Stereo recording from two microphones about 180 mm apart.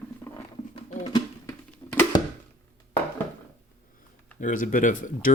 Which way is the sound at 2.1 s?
20° left (ahead or behind).